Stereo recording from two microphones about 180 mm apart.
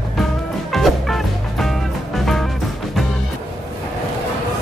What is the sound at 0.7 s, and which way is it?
Music, centre (ahead or behind).